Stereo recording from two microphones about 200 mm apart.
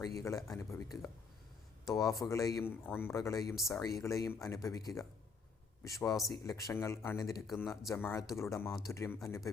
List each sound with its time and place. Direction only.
0.0 s speech: 15° left (ahead or behind)
3.5 s speech: centre (ahead or behind)
3.8 s speech: 15° left (ahead or behind)
7.4 s speech: centre (ahead or behind)
7.9 s speech: 15° left (ahead or behind)